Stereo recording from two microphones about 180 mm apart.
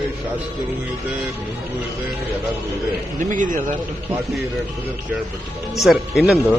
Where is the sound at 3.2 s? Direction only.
45° right (ahead or behind).